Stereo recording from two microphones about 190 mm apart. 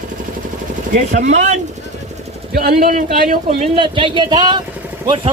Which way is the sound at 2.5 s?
50° right (ahead or behind).